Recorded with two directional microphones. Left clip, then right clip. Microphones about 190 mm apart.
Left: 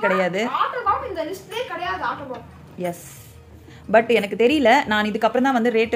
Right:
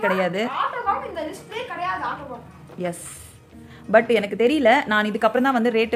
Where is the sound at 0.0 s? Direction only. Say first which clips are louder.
Left 1 dB; 5° right (ahead or behind).